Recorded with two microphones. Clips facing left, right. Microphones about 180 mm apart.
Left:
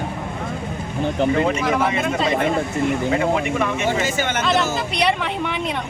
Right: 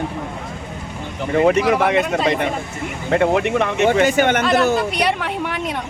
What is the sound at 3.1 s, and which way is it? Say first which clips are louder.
Speech: right 3 dB; 65° right (ahead or behind).